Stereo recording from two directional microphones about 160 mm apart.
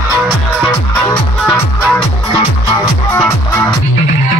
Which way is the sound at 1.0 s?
15° left (ahead or behind).